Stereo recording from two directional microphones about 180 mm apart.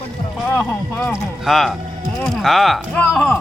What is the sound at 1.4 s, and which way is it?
Speech, centre (ahead or behind).